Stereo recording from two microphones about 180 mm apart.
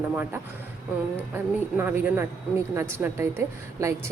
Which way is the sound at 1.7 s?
10° right (ahead or behind).